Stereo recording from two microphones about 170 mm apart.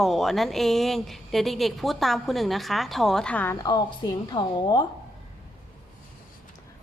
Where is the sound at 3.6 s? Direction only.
25° left (ahead or behind).